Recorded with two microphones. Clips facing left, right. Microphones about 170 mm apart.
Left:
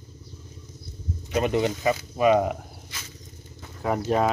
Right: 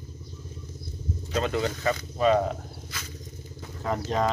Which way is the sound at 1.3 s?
20° left (ahead or behind).